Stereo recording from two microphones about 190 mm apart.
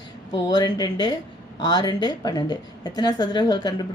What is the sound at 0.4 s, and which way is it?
A woman's voice, 20° left (ahead or behind).